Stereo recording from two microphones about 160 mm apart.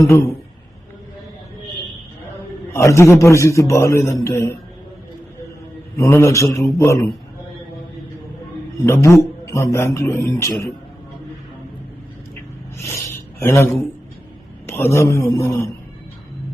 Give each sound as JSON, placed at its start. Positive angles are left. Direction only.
{"t": 0.0, "sound": "a man's voice", "side_deg": 20}
{"t": 2.7, "sound": "a man's voice", "side_deg": 20}
{"t": 6.0, "sound": "a man's voice", "side_deg": 15}
{"t": 8.9, "sound": "a man's voice", "side_deg": 15}
{"t": 13.4, "sound": "a man's voice", "side_deg": 15}
{"t": 14.7, "sound": "a man's voice", "side_deg": 15}